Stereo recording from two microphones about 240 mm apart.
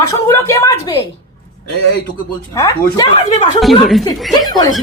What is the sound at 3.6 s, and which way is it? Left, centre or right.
Speech, centre.